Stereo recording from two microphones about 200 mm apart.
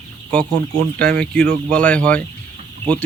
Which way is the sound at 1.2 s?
5° left (ahead or behind).